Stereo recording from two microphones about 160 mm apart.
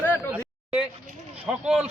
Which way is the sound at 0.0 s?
15° left (ahead or behind).